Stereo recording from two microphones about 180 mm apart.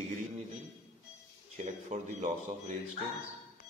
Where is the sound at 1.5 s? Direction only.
40° right (ahead or behind).